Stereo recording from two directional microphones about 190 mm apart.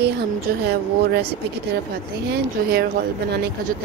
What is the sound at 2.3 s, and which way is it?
Speech, 55° right (ahead or behind).